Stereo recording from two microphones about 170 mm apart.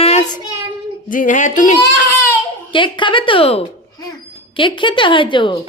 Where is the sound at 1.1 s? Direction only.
50° left (ahead or behind).